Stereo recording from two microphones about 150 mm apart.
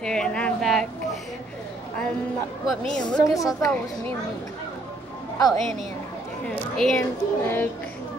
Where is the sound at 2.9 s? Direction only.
5° left (ahead or behind).